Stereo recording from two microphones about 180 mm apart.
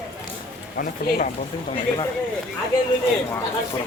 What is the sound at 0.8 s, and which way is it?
Speech, 50° left (ahead or behind).